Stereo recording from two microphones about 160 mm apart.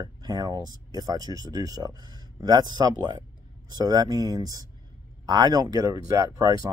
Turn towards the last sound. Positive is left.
turn(degrees=-20)  # may be behind; listen again after turning